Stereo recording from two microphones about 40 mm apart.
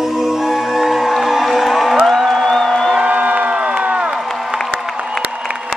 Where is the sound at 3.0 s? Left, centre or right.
Right.